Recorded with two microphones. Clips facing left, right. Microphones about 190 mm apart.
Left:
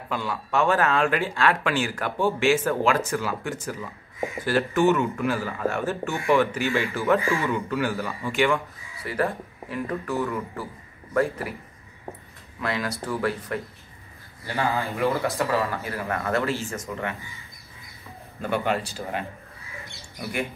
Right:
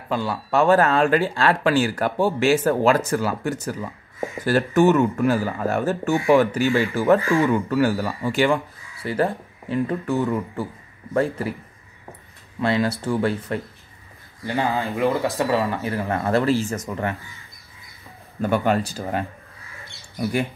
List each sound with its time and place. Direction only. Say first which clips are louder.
0.1 s speech: right 4 dB; 35° right (ahead or behind)
12.5 s speech: right 7 dB; 30° right (ahead or behind)
14.4 s speech: right 3 dB; 15° right (ahead or behind); by 17.1 s 40° right (ahead or behind)
18.5 s speech: right 4 dB; 45° right (ahead or behind)